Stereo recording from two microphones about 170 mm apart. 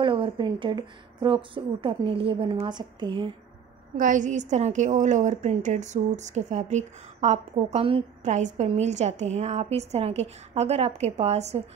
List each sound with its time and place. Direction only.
0.0 s speech: 30° right (ahead or behind)
3.9 s a woman's voice: 50° right (ahead or behind)